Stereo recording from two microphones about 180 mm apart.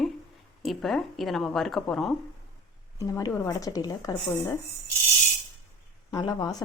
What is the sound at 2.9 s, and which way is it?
Speech, 15° left (ahead or behind).